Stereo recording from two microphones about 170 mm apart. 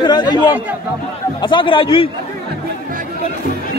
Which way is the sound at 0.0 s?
25° left (ahead or behind).